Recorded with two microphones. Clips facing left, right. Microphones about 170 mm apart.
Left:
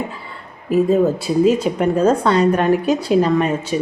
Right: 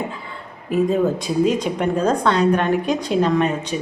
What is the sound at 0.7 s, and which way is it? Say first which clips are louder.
Speech: left 3 dB; 5° left (ahead or behind).